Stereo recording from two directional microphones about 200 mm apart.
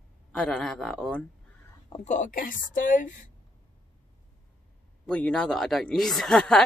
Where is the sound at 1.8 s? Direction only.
30° left (ahead or behind).